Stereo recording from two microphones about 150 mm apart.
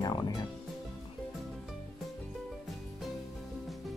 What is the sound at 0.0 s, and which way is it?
Music, 25° left (ahead or behind).